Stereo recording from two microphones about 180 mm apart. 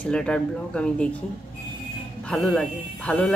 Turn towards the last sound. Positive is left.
turn(degrees=5)  # may be behind; listen again after turning